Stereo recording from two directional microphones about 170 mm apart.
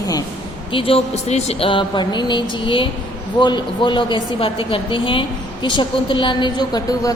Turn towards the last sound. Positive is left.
turn(degrees=25)  # may be behind; listen again after turning